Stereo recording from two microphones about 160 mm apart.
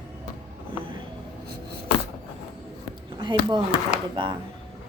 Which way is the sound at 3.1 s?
30° right (ahead or behind).